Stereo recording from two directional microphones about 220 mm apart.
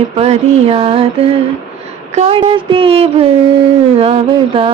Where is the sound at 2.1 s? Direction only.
30° right (ahead or behind).